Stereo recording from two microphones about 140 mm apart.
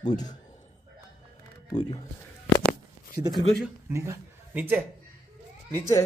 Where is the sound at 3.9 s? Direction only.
20° right (ahead or behind).